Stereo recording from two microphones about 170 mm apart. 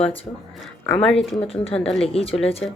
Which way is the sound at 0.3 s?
30° left (ahead or behind).